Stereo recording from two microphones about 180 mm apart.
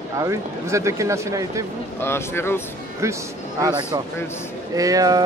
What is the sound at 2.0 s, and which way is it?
Speech, 15° left (ahead or behind).